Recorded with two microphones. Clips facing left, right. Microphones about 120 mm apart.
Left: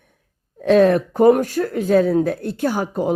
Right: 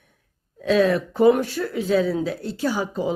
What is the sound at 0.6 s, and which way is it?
Speech, 50° left (ahead or behind).